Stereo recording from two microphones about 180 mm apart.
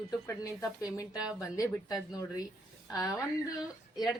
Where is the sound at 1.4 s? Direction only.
20° left (ahead or behind).